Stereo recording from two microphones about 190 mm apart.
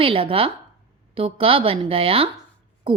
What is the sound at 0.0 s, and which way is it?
A woman's voice, 30° right (ahead or behind).